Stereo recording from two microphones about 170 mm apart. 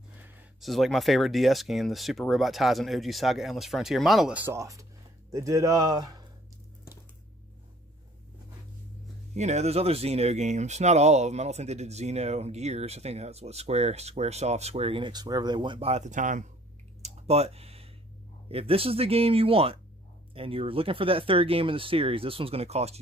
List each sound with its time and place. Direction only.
0.6 s speech: centre (ahead or behind); by 6.2 s 25° right (ahead or behind)
9.3 s speech: 40° right (ahead or behind)
17.0 s tick-tock: 35° right (ahead or behind)
18.5 s speech: 35° right (ahead or behind)